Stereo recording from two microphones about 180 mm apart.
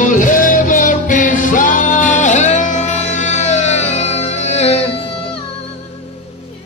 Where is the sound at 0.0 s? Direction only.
45° left (ahead or behind); by 5.1 s 30° left (ahead or behind).